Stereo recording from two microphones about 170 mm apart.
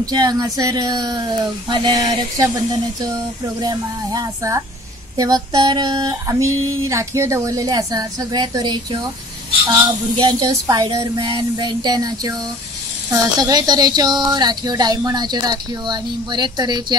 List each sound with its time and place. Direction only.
0.0 s speech: 25° right (ahead or behind)